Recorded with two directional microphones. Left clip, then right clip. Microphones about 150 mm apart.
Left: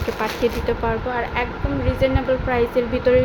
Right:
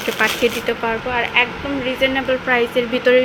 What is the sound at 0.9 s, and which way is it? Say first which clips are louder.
Speech: right 3 dB; 5° right (ahead or behind).